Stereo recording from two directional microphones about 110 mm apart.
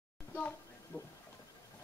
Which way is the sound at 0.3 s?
15° left (ahead or behind).